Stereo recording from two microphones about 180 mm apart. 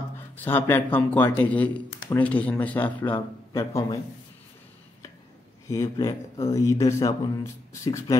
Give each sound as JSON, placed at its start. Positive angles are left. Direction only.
{"t": 0.4, "sound": "speech", "side_deg": 10}
{"t": 5.7, "sound": "speech", "side_deg": 20}